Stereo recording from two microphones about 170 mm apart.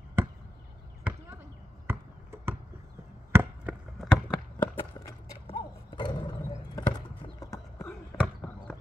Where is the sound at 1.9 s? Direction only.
15° right (ahead or behind).